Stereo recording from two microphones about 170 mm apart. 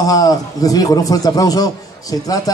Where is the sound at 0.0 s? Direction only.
20° left (ahead or behind).